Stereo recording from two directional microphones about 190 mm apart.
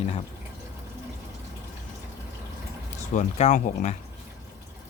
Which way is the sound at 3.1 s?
40° left (ahead or behind).